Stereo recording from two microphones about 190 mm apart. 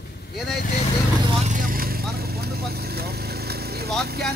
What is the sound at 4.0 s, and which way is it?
Speech, 55° right (ahead or behind).